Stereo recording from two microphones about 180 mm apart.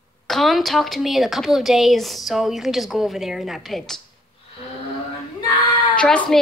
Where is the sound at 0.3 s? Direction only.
Centre (ahead or behind).